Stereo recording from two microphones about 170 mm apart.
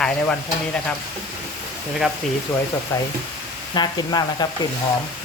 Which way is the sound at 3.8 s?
25° left (ahead or behind).